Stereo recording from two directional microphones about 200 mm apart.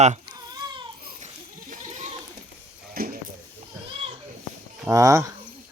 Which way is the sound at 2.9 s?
45° right (ahead or behind).